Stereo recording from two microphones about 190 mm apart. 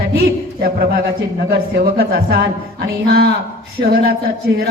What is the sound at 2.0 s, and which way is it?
A woman's voice, 55° right (ahead or behind).